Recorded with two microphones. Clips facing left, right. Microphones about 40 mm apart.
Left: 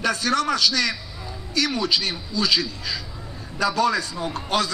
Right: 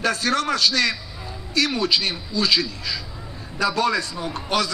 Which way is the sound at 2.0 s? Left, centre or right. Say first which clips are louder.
Right 1 dB; centre.